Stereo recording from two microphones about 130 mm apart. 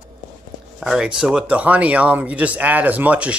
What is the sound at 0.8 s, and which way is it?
Speech, 5° right (ahead or behind).